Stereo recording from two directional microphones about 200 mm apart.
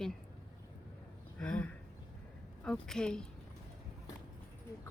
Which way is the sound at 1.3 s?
5° left (ahead or behind).